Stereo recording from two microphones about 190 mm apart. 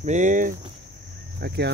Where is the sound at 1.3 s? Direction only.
60° right (ahead or behind).